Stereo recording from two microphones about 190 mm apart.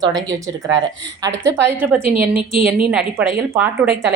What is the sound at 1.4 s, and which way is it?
A woman's voice, 15° right (ahead or behind).